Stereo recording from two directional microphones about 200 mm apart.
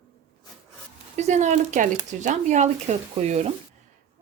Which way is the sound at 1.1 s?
35° right (ahead or behind).